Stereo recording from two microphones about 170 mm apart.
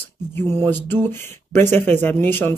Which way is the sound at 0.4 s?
10° left (ahead or behind).